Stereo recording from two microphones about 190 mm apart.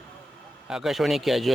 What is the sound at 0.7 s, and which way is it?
Speech, centre (ahead or behind).